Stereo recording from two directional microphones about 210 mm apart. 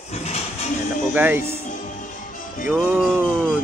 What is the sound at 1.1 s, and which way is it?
Speech, 10° right (ahead or behind).